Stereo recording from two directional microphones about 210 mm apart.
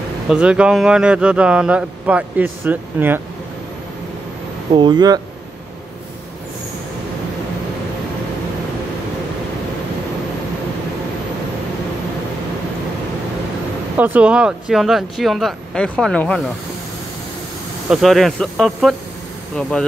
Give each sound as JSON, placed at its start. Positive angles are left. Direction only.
{"t": 0.3, "sound": "speech", "side_deg": -5}
{"t": 4.7, "sound": "speech", "side_deg": -20}
{"t": 13.9, "sound": "speech", "side_deg": -5}
{"t": 17.8, "sound": "speech", "side_deg": 0}